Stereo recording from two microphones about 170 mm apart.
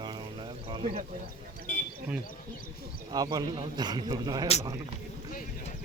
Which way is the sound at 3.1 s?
25° right (ahead or behind).